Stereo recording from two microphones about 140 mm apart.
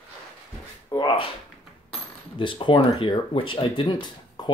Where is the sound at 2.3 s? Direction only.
35° left (ahead or behind).